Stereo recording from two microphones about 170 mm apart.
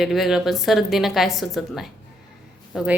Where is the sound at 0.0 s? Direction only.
Centre (ahead or behind).